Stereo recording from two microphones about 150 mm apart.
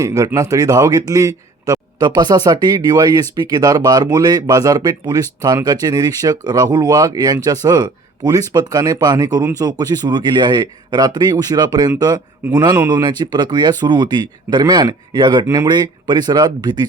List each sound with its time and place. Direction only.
0.0 s speech: 20° right (ahead or behind)